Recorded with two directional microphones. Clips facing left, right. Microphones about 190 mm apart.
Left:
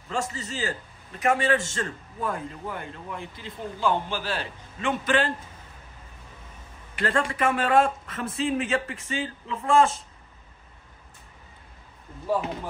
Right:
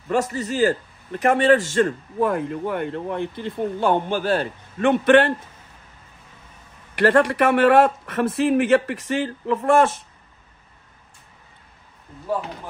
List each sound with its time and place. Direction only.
0.1 s a man's voice: 60° right (ahead or behind)
7.0 s a man's voice: 65° right (ahead or behind)